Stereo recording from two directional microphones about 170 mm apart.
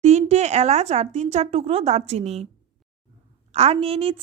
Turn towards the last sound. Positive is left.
turn(degrees=-35)  # may be behind; listen again after turning